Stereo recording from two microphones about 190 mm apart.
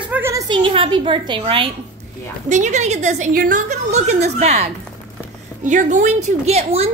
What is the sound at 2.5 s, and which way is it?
A woman's voice, 40° right (ahead or behind).